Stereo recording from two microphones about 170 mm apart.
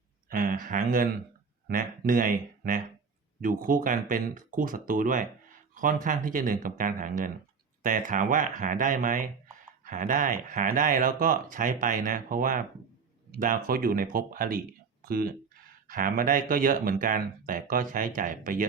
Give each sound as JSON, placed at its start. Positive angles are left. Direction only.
{"t": 0.3, "sound": "speech", "side_deg": -55}